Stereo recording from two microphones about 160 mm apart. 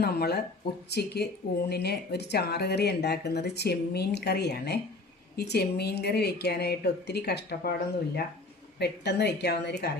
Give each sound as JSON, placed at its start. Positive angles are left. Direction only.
{"t": 0.0, "sound": "a woman's voice", "side_deg": 75}